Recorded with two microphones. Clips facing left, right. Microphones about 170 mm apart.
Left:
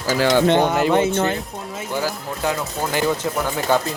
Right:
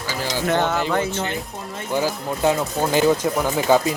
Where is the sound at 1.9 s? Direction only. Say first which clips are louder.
Right 3 dB; 20° right (ahead or behind).